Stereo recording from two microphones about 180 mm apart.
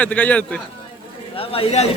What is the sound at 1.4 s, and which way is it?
Speech, 30° left (ahead or behind).